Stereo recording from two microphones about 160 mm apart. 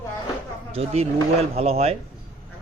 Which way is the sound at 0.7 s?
40° right (ahead or behind).